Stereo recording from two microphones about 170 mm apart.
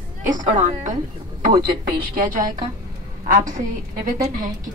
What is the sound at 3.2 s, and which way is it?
A woman's voice, 50° right (ahead or behind).